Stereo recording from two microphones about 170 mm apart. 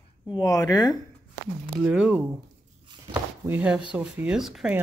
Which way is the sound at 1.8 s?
10° right (ahead or behind).